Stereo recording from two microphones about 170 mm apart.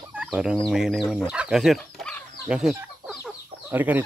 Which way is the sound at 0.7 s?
Centre (ahead or behind).